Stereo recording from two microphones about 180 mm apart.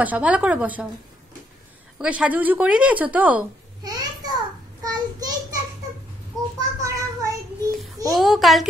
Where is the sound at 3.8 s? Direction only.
20° right (ahead or behind).